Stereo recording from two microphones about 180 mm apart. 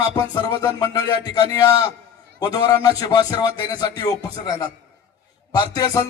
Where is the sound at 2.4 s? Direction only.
20° left (ahead or behind).